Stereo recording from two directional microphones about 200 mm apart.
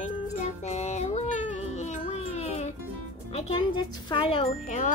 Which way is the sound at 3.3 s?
25° left (ahead or behind).